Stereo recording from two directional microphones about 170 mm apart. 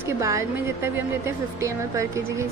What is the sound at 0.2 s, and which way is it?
Speech, 15° right (ahead or behind).